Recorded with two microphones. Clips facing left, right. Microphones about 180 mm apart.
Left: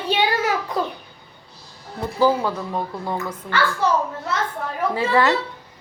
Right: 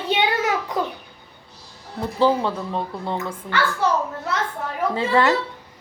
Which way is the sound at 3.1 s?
25° right (ahead or behind).